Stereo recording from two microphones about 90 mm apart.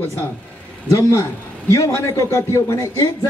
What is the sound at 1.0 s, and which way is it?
A man's voice, 40° left (ahead or behind).